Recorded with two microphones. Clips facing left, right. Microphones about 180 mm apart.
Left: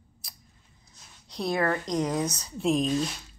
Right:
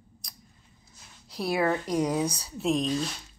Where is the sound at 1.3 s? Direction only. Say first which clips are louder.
Right 1 dB; 5° right (ahead or behind).